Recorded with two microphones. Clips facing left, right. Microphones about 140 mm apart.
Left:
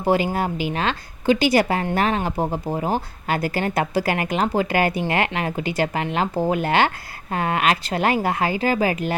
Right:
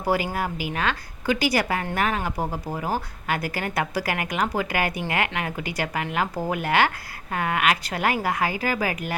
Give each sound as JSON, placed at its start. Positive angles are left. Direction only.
{"t": 0.0, "sound": "a woman's voice", "side_deg": 25}